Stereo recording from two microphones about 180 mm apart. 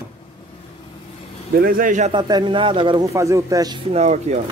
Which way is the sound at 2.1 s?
25° right (ahead or behind).